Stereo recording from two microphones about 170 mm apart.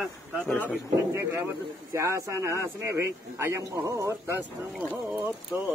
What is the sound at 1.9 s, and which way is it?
A man's voice, 15° right (ahead or behind).